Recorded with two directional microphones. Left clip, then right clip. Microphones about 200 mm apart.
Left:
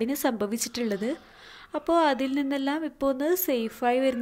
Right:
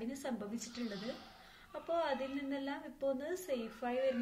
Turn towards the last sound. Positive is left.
turn(degrees=45)  # may be behind; listen again after turning